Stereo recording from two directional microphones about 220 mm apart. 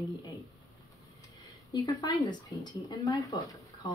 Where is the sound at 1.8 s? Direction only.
20° left (ahead or behind).